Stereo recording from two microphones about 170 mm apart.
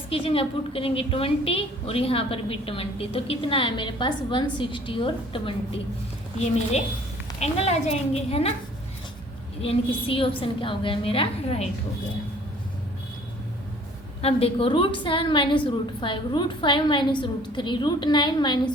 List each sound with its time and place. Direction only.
0.1 s a woman's voice: 35° left (ahead or behind)
7.3 s a woman's voice: 40° left (ahead or behind)
9.6 s a woman's voice: 35° left (ahead or behind)
14.2 s a woman's voice: 35° left (ahead or behind)